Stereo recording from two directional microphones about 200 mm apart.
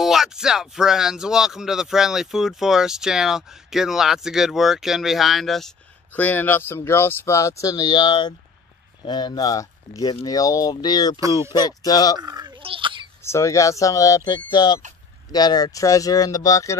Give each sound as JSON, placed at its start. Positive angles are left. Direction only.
{"t": 0.0, "sound": "speech", "side_deg": 0}
{"t": 11.1, "sound": "speech", "side_deg": -15}
{"t": 11.5, "sound": "speech", "side_deg": 20}
{"t": 12.2, "sound": "a sound", "side_deg": -20}
{"t": 13.2, "sound": "speech", "side_deg": 15}